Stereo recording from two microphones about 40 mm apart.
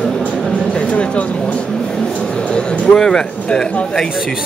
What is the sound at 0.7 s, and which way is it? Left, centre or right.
Speech, left.